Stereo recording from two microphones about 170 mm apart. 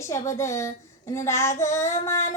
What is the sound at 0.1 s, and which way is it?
Child singing, 15° left (ahead or behind).